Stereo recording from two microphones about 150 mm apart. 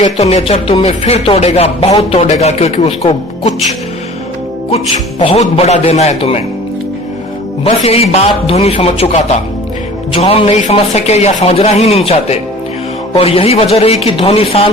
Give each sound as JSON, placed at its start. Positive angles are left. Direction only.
{"t": 0.0, "sound": "speech", "side_deg": 45}
{"t": 5.2, "sound": "speech", "side_deg": 40}
{"t": 7.6, "sound": "speech", "side_deg": 40}